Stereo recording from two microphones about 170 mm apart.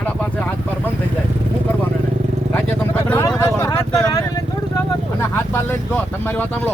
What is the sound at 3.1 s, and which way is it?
Vehicle, 15° left (ahead or behind).